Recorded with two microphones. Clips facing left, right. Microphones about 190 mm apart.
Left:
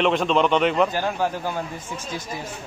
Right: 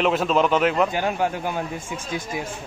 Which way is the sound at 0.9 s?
15° right (ahead or behind).